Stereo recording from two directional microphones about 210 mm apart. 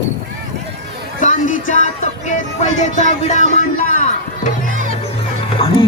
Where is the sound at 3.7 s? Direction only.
40° left (ahead or behind).